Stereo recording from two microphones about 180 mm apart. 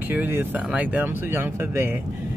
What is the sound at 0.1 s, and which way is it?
Speech, 10° right (ahead or behind).